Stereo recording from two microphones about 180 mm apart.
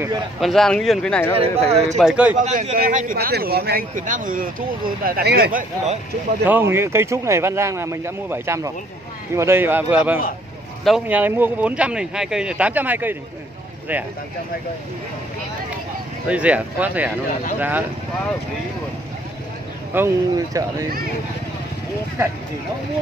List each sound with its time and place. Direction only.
0.4 s speech: centre (ahead or behind)
1.4 s speech: 35° right (ahead or behind)
2.0 s speech: 5° right (ahead or behind)
2.3 s speech: 40° right (ahead or behind)
6.4 s speech: 10° right (ahead or behind)
16.3 s speech: 5° right (ahead or behind)
19.9 s speech: 15° right (ahead or behind)